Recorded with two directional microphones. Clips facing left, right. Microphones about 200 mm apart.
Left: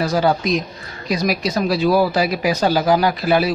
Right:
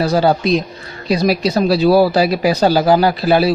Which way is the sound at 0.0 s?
30° right (ahead or behind).